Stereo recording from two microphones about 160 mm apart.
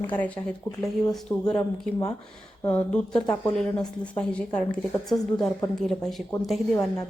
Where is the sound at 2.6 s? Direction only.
10° left (ahead or behind).